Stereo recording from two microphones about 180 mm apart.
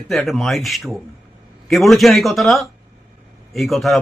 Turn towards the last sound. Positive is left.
turn(degrees=0)  # may be behind; listen again after turning